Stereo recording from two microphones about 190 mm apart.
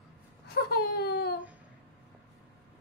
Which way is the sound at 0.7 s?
60° left (ahead or behind).